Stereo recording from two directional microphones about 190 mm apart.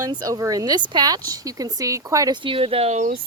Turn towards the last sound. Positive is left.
turn(degrees=-35)  # may be behind; listen again after turning